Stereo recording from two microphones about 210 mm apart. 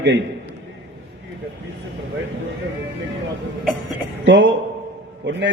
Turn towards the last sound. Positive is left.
turn(degrees=-60)  # may be behind; listen again after turning